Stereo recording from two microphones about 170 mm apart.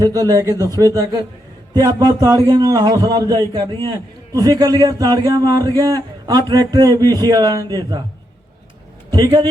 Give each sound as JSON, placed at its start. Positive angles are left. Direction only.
{"t": 0.0, "sound": "a man's voice", "side_deg": -20}
{"t": 1.7, "sound": "a man's voice", "side_deg": -20}
{"t": 9.0, "sound": "a man's voice", "side_deg": -25}